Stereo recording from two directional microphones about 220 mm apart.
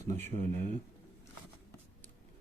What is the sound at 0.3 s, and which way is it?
Speech, 30° right (ahead or behind).